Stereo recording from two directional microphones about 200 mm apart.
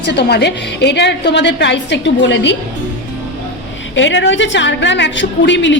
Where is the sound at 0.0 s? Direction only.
55° left (ahead or behind).